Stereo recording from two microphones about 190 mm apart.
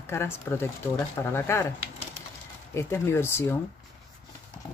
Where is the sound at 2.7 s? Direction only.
15° left (ahead or behind).